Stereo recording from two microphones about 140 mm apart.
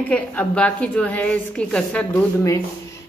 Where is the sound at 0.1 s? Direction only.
10° left (ahead or behind).